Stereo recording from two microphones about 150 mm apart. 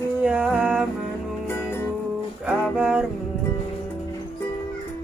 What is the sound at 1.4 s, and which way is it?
Music, 15° left (ahead or behind).